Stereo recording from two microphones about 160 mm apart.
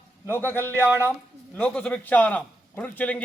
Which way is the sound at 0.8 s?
15° right (ahead or behind).